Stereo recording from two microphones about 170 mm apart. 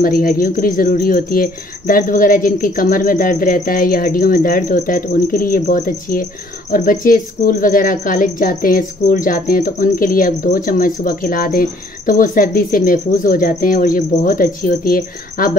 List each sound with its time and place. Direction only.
0.0 s speech: 55° left (ahead or behind)